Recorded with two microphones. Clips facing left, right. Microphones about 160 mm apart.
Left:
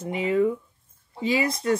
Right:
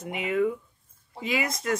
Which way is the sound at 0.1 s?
30° left (ahead or behind).